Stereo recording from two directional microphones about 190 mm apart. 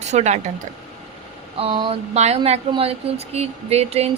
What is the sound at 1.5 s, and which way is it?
A woman's voice, 30° right (ahead or behind).